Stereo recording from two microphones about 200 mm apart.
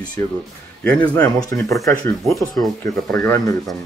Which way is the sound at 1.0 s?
10° left (ahead or behind).